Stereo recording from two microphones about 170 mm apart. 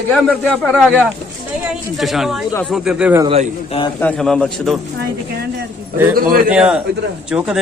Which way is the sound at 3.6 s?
35° left (ahead or behind).